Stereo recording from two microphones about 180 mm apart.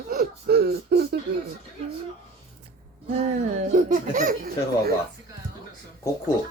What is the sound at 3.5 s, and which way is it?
Speech, 45° right (ahead or behind).